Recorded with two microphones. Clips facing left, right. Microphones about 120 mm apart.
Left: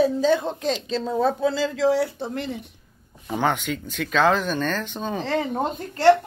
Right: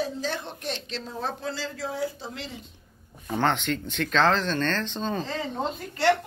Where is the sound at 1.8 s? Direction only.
80° left; by 2.7 s 55° left (ahead or behind).